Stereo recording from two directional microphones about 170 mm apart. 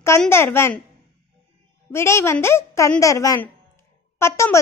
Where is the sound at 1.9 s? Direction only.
15° left (ahead or behind).